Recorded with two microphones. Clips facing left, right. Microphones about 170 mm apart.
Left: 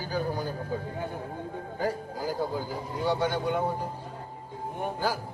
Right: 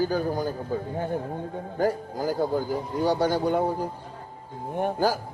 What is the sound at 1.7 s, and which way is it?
Speech, 50° right (ahead or behind).